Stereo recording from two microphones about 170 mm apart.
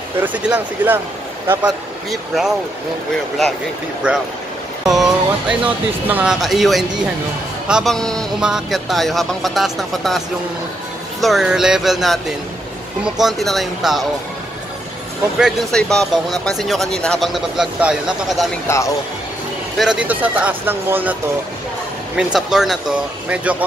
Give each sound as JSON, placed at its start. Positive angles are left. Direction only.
{"t": 0.2, "sound": "speech", "side_deg": -10}
{"t": 2.0, "sound": "speech", "side_deg": 0}
{"t": 4.0, "sound": "speech", "side_deg": -5}
{"t": 4.8, "sound": "music", "side_deg": 0}
{"t": 6.0, "sound": "speech", "side_deg": -5}
{"t": 15.3, "sound": "speech", "side_deg": 0}
{"t": 18.7, "sound": "speech", "side_deg": 15}
{"t": 19.8, "sound": "speech", "side_deg": -5}